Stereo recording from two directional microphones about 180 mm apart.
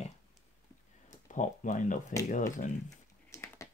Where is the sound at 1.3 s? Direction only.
45° left (ahead or behind).